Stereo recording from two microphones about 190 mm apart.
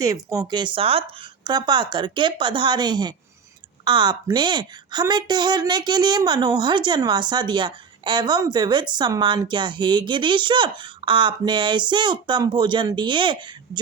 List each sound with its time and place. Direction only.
0.0 s a woman's voice: 20° right (ahead or behind)